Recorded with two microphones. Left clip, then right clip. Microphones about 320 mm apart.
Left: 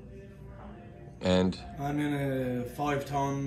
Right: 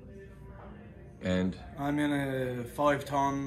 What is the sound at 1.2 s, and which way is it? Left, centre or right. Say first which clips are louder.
Speech: left 5 dB; centre.